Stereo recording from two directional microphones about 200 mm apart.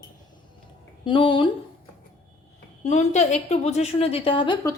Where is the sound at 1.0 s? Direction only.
25° left (ahead or behind).